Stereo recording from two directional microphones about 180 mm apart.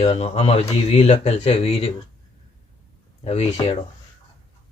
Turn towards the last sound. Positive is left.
turn(degrees=35)  # may be behind; listen again after turning